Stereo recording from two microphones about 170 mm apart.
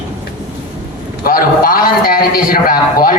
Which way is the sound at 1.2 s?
55° left (ahead or behind).